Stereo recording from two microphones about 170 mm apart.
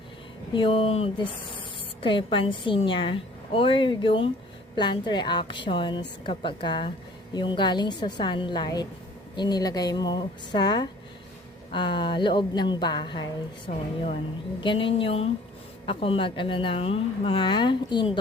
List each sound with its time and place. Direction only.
0.5 s a woman's voice: 30° left (ahead or behind)
13.7 s a woman's voice: 40° left (ahead or behind)